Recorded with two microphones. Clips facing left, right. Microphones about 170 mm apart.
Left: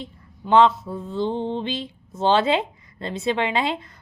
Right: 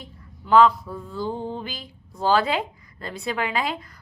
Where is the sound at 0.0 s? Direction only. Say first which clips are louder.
Left 7 dB; 25° left (ahead or behind).